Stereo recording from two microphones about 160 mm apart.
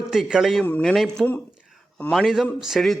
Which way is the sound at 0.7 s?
10° left (ahead or behind).